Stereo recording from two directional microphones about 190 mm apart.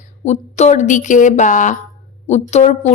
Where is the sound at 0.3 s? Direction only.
35° left (ahead or behind).